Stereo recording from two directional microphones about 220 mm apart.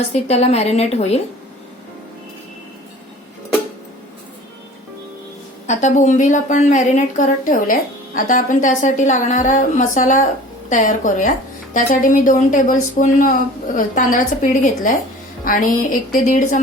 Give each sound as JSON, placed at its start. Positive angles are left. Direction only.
{"t": 0.1, "sound": "a woman's voice", "side_deg": 30}
{"t": 5.6, "sound": "a woman's voice", "side_deg": 35}